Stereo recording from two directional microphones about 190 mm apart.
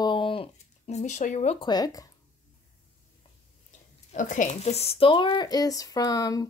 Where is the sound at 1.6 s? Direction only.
20° left (ahead or behind).